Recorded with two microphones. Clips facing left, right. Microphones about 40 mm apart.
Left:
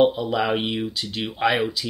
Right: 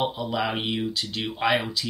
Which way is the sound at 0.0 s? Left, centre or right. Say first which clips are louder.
Left 7 dB; centre.